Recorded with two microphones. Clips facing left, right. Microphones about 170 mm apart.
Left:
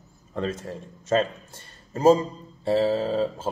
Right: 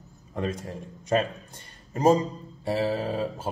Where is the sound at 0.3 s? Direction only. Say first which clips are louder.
Left 1 dB; 15° right (ahead or behind).